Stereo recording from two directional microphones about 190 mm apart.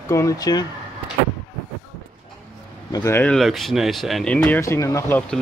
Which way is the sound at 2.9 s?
15° left (ahead or behind).